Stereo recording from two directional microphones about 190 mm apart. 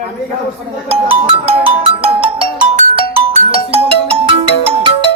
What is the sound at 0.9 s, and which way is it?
Music, 30° right (ahead or behind).